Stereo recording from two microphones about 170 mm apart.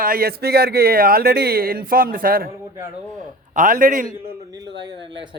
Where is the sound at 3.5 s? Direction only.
50° right (ahead or behind).